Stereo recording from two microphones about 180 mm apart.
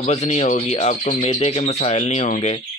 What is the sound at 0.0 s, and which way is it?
Speech, 40° left (ahead or behind).